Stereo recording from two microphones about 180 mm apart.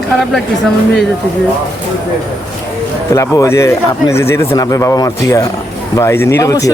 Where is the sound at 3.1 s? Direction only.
15° left (ahead or behind).